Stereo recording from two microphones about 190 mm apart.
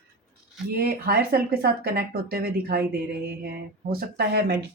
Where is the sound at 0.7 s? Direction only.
55° right (ahead or behind).